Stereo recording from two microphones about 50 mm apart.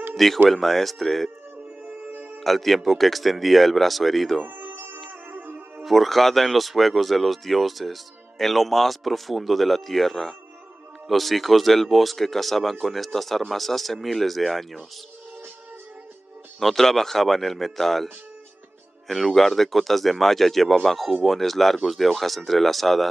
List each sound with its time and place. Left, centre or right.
0.1 s a sound: centre
0.5 s speech: centre
2.1 s music: right
2.4 s speech: centre
4.5 s music: right
5.8 s speech: centre
16.5 s speech: centre